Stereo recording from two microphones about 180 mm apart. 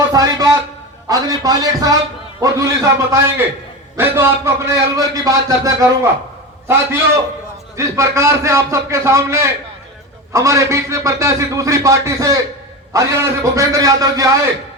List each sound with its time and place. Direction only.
0.1 s a man's voice: 20° right (ahead or behind)
7.8 s a man's voice: 15° right (ahead or behind)